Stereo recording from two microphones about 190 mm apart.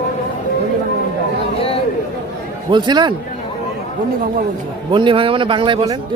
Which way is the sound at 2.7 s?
25° right (ahead or behind).